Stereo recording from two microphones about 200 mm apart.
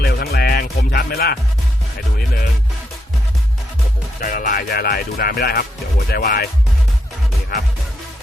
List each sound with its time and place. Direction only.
0.0 s music: 50° left (ahead or behind)
4.2 s speech: 45° left (ahead or behind)